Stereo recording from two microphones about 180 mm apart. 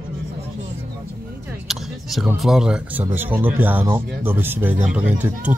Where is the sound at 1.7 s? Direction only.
Centre (ahead or behind).